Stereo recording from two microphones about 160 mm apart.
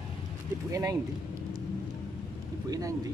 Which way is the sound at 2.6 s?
25° right (ahead or behind).